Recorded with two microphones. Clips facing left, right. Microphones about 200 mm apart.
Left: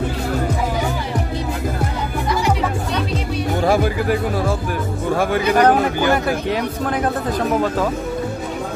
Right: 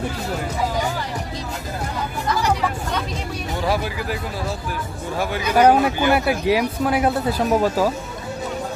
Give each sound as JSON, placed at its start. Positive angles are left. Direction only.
{"t": 3.6, "sound": "speech", "side_deg": 50}
{"t": 5.6, "sound": "speech", "side_deg": -10}